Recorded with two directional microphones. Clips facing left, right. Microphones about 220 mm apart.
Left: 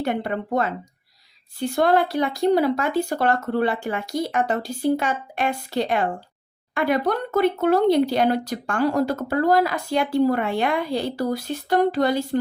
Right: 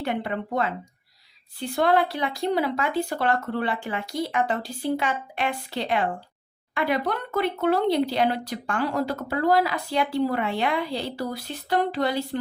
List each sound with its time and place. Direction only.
0.0 s speech: 40° left (ahead or behind)